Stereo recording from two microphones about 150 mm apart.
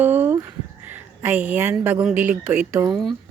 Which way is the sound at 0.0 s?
15° right (ahead or behind).